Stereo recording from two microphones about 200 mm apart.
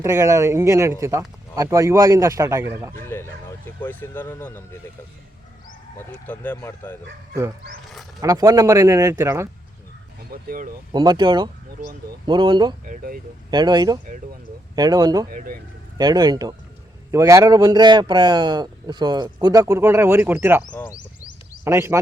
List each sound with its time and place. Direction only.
0.0 s a man's voice: 15° right (ahead or behind)
3.0 s speech: 10° left (ahead or behind)
6.2 s speech: 10° left (ahead or behind)
8.2 s a man's voice: 15° right (ahead or behind)
10.3 s speech: 45° right (ahead or behind)
10.9 s a man's voice: 20° right (ahead or behind)
12.8 s speech: 45° right (ahead or behind)
13.5 s a man's voice: 20° right (ahead or behind)
15.3 s speech: 45° right (ahead or behind)
16.0 s a man's voice: 20° right (ahead or behind)
20.7 s speech: 10° left (ahead or behind)
21.6 s speech: 15° right (ahead or behind)